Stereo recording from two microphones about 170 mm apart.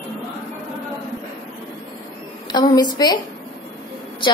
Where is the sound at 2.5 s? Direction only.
25° left (ahead or behind).